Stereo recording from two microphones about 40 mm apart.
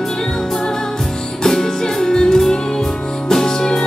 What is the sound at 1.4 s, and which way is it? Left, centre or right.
Music, centre.